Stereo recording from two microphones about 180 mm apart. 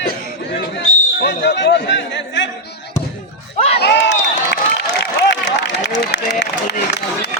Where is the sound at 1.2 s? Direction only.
75° left (ahead or behind).